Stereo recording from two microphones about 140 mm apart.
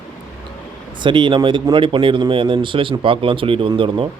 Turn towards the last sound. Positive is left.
turn(degrees=-35)  # may be behind; listen again after turning